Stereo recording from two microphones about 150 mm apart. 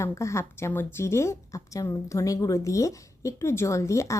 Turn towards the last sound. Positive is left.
turn(degrees=20)  # may be behind; listen again after turning